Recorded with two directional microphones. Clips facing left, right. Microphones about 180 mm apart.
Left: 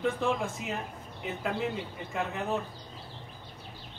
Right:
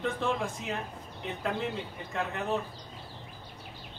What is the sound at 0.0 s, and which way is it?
Speech, centre (ahead or behind).